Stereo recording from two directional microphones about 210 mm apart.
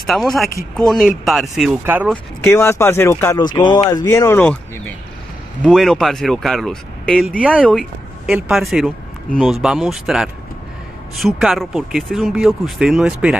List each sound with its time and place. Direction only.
0.0 s speech: centre (ahead or behind)
2.0 s speech: 10° left (ahead or behind)
5.6 s speech: centre (ahead or behind)